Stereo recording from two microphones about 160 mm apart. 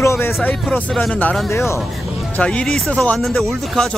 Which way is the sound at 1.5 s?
15° left (ahead or behind).